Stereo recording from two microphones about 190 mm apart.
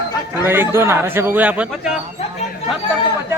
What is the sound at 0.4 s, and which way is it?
A man's voice, 10° right (ahead or behind).